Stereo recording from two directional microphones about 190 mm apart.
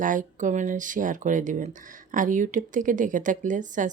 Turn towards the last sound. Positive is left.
turn(degrees=-40)  # may be behind; listen again after turning